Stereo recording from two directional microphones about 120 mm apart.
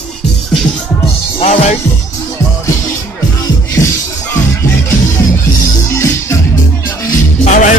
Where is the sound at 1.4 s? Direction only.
75° left (ahead or behind).